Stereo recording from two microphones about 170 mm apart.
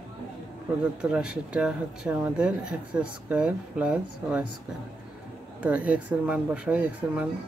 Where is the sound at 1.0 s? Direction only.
5° right (ahead or behind).